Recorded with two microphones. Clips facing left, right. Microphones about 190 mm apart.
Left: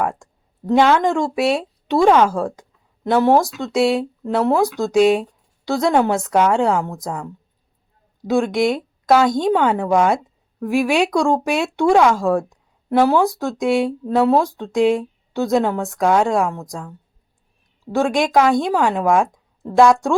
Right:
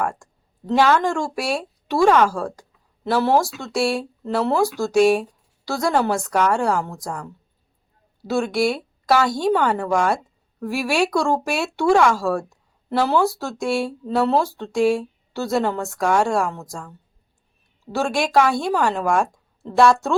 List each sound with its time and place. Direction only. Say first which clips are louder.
0.7 s speech: left 3 dB; 15° left (ahead or behind)
8.2 s speech: left 3 dB; 15° left (ahead or behind)
12.5 s a sound: left 5 dB; 15° left (ahead or behind)
13.4 s speech: left 5 dB; 15° left (ahead or behind)
16.6 s a woman's voice: left 3 dB; centre (ahead or behind)
17.9 s speech: left 3 dB; 15° left (ahead or behind)